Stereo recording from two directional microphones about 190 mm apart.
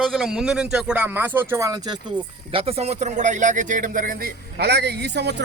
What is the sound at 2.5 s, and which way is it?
Speech, 30° right (ahead or behind).